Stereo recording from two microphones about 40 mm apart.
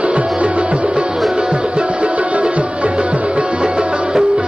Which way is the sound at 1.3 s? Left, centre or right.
Right.